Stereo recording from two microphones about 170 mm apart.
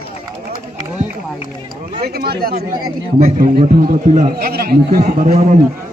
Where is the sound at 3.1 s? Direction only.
45° right (ahead or behind).